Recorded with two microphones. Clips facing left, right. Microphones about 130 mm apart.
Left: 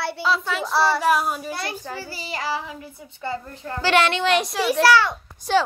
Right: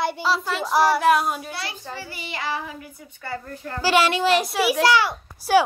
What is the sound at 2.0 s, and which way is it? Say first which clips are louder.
Child singing: right 1 dB; 35° left (ahead or behind).